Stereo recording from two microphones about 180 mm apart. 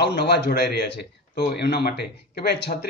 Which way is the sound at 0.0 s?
65° left (ahead or behind).